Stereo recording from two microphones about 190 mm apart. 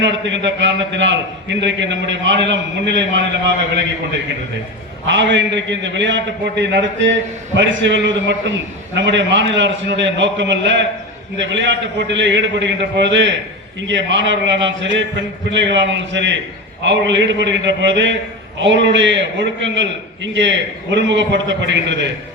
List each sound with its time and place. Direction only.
0.0 s a man's voice: 70° right (ahead or behind)
5.0 s a man's voice: 75° right (ahead or behind)